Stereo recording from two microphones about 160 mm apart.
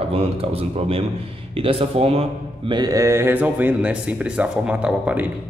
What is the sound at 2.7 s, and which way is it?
Speech, 20° right (ahead or behind).